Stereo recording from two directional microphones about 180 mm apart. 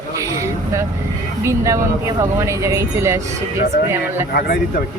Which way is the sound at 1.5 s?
15° right (ahead or behind).